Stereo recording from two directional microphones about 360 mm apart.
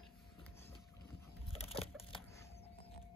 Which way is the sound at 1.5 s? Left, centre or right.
Centre.